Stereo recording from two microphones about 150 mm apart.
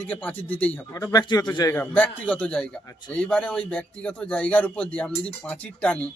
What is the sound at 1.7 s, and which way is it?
Speech, 10° left (ahead or behind).